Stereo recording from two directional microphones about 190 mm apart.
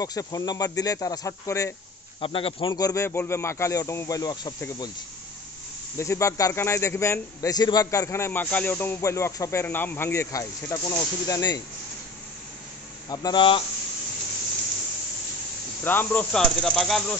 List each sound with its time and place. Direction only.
0.0 s speech: 20° left (ahead or behind)
2.1 s speech: 30° left (ahead or behind)
5.9 s a man's voice: 15° left (ahead or behind)
13.1 s speech: 20° left (ahead or behind)
15.8 s speech: 10° left (ahead or behind)